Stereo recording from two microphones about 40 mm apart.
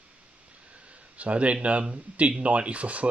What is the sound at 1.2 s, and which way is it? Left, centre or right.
Speech, right.